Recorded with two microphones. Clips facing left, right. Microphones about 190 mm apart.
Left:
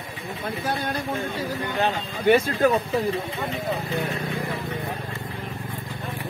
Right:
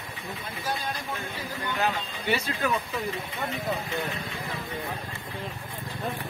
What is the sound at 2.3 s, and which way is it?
Speech, 40° left (ahead or behind).